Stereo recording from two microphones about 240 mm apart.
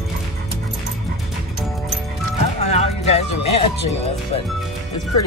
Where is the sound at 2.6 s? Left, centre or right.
Left.